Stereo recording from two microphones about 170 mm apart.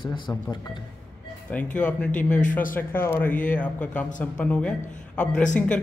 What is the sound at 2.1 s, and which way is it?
Speech, 50° left (ahead or behind).